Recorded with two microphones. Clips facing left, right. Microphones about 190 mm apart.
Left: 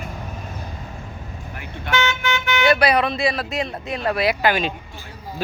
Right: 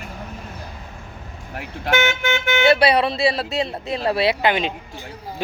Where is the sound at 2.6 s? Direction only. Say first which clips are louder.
Right 2 dB; 30° right (ahead or behind).